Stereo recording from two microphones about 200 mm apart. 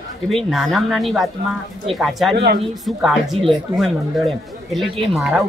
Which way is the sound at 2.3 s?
55° right (ahead or behind).